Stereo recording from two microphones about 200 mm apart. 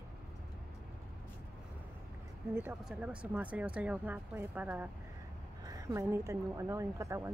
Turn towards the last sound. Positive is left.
turn(degrees=-15)  # may be behind; listen again after turning